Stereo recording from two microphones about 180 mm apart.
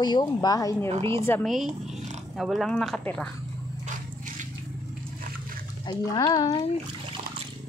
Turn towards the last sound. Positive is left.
turn(degrees=20)  # may be behind; listen again after turning